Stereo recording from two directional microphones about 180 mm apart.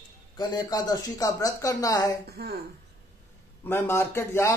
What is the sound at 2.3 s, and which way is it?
Speech, 60° right (ahead or behind).